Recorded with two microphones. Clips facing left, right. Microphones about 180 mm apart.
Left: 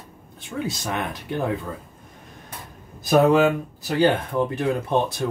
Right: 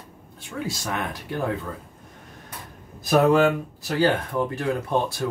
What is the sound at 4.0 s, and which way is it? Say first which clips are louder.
Speech: left 2 dB; 20° left (ahead or behind).